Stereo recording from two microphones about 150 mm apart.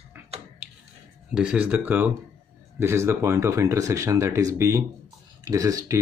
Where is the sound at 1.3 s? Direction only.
5° right (ahead or behind).